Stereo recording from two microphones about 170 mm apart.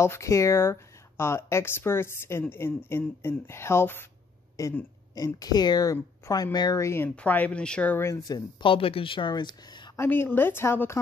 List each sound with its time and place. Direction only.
0.0 s speech: 15° left (ahead or behind)
9.9 s speech: 15° left (ahead or behind)